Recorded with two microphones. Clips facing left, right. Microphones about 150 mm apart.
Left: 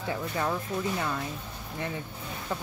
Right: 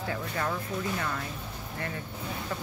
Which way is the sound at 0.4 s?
15° left (ahead or behind).